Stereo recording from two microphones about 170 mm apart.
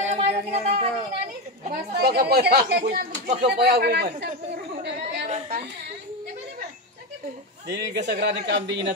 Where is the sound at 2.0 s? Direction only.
70° right (ahead or behind).